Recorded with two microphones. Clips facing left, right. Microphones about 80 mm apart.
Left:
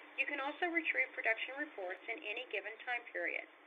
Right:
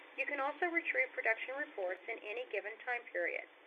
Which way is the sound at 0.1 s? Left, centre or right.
Centre.